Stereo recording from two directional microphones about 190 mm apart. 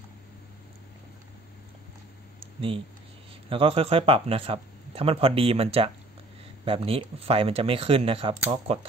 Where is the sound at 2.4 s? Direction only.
30° right (ahead or behind).